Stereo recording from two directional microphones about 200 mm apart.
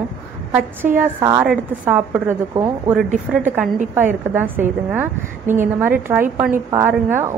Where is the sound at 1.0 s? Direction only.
10° right (ahead or behind).